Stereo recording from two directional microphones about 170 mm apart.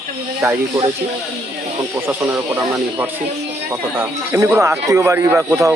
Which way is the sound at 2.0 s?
15° right (ahead or behind).